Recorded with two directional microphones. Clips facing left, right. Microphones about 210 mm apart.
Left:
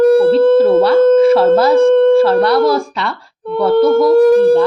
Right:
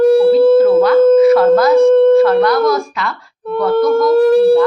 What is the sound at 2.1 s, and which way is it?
A woman's voice, 30° left (ahead or behind).